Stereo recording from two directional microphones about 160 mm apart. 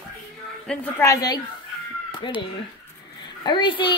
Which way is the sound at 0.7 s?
5° left (ahead or behind).